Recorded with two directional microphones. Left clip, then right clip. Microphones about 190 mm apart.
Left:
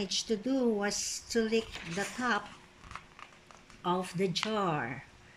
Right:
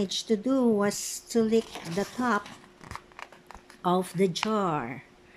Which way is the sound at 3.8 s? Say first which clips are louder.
Right 6 dB; 25° right (ahead or behind).